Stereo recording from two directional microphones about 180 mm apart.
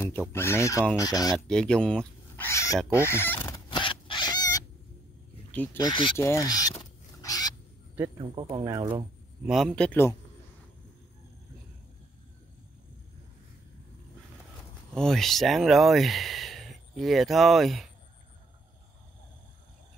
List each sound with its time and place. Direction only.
0.3 s speech: 15° left (ahead or behind)
1.5 s speech: 5° left (ahead or behind)
3.0 s fowl: 15° left (ahead or behind)
3.7 s a sound: 25° left (ahead or behind)
5.5 s speech: 10° left (ahead or behind)
5.8 s speech: 25° left (ahead or behind)
6.8 s a sound: 20° left (ahead or behind)
8.2 s speech: 25° right (ahead or behind)
9.5 s a man's voice: centre (ahead or behind)
15.0 s speech: centre (ahead or behind)